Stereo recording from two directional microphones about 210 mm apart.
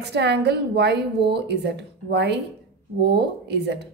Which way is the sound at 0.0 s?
50° right (ahead or behind).